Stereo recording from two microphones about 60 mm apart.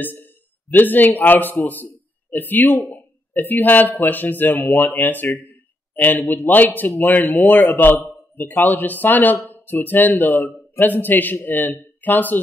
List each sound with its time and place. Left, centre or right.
0.0 s speech: left